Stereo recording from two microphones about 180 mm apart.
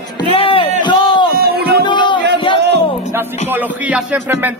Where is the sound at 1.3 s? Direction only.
55° right (ahead or behind).